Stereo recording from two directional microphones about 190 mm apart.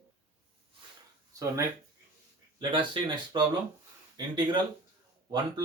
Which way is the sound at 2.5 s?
25° right (ahead or behind).